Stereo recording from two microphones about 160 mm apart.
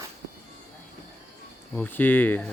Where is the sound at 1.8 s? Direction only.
10° left (ahead or behind).